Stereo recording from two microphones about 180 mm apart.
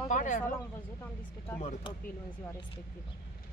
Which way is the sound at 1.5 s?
35° left (ahead or behind).